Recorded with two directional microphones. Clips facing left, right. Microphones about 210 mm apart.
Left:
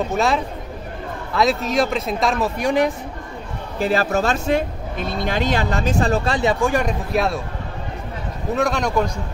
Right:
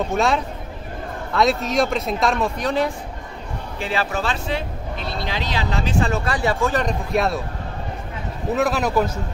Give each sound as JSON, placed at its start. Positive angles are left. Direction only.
{"t": 0.1, "sound": "speech", "side_deg": 0}
{"t": 3.8, "sound": "speech", "side_deg": 45}
{"t": 8.5, "sound": "speech", "side_deg": -5}